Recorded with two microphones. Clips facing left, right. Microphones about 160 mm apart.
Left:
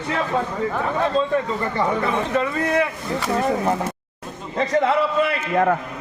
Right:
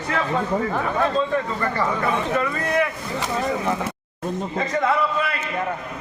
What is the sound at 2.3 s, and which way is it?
Speech, 25° left (ahead or behind).